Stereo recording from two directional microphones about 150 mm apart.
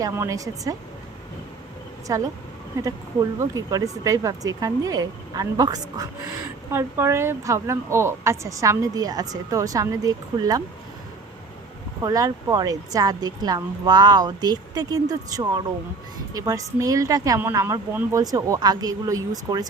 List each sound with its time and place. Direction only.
0.0 s a woman's voice: 20° right (ahead or behind)
2.1 s a woman's voice: 20° right (ahead or behind)
3.4 s a woman's voice: 25° right (ahead or behind)
12.0 s a woman's voice: 25° right (ahead or behind)